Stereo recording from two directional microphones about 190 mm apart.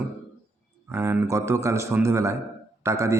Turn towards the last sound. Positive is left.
turn(degrees=-15)  # may be behind; listen again after turning